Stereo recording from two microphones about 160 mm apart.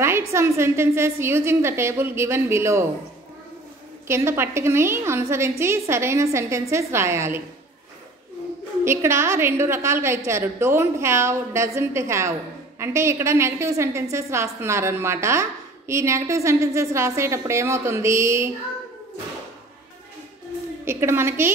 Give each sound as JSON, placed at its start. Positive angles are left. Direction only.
{"t": 0.3, "sound": "a woman's voice", "side_deg": -15}
{"t": 4.1, "sound": "a woman's voice", "side_deg": -15}
{"t": 8.8, "sound": "a woman's voice", "side_deg": -15}
{"t": 20.8, "sound": "a woman's voice", "side_deg": -15}